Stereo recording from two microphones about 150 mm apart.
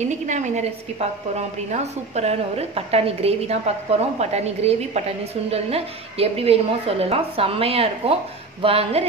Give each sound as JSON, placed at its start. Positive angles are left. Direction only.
{"t": 0.0, "sound": "a woman's voice", "side_deg": -50}